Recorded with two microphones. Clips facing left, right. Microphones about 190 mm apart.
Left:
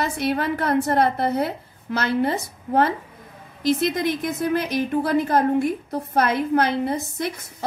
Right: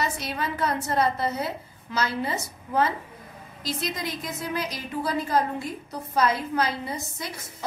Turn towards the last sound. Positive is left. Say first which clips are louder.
# left 9 dB
turn(degrees=60)  # may be behind; listen again after turning